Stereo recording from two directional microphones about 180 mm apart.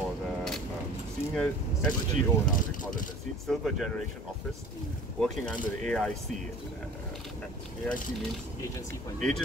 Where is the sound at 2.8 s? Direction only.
45° left (ahead or behind).